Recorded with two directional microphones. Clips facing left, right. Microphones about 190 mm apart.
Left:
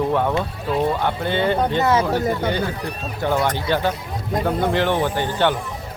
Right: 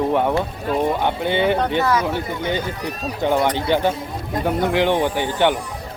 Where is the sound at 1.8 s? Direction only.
25° left (ahead or behind).